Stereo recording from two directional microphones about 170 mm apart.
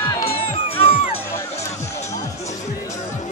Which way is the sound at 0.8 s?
35° left (ahead or behind).